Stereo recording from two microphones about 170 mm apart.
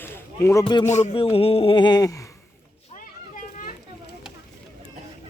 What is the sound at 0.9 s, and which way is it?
Speech, 45° left (ahead or behind).